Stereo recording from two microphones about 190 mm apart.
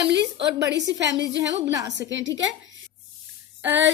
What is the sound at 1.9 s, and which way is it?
Speech, 75° right (ahead or behind).